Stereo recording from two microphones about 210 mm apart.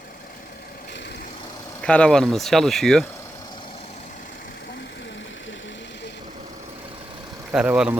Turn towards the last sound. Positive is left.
turn(degrees=-5)  # may be behind; listen again after turning